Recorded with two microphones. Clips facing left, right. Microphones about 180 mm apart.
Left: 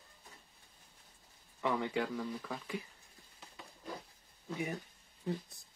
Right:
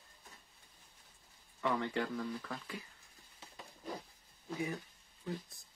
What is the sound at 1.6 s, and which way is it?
Speech, 10° left (ahead or behind).